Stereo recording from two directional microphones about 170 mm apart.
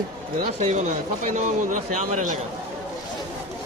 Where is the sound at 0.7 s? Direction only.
45° right (ahead or behind).